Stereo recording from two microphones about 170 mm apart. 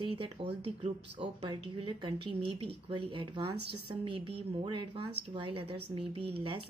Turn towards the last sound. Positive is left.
turn(degrees=-35)  # may be behind; listen again after turning